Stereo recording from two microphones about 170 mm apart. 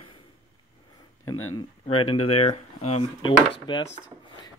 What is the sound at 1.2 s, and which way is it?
Speech, 25° left (ahead or behind).